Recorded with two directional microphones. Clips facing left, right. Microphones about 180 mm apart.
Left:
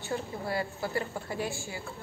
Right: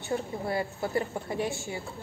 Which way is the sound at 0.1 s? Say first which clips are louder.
Right 3 dB; 20° right (ahead or behind).